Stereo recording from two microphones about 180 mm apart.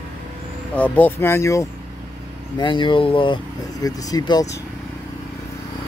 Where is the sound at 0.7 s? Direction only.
10° left (ahead or behind).